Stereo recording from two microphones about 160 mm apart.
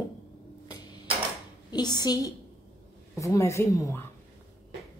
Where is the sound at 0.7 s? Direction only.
25° left (ahead or behind).